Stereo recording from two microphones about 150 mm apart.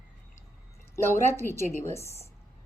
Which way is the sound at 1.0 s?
15° left (ahead or behind).